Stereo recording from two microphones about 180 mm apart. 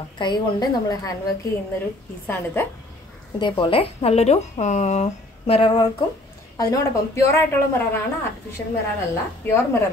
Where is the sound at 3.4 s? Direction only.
30° left (ahead or behind).